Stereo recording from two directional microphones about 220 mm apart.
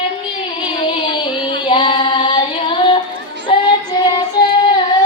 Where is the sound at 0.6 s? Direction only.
20° left (ahead or behind).